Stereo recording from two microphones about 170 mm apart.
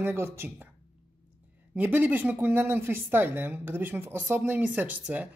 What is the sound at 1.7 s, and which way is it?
Speech, 10° right (ahead or behind).